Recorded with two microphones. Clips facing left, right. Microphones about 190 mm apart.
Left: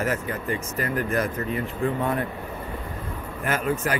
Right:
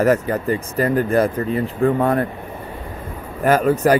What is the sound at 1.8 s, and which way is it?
Speech, 50° right (ahead or behind).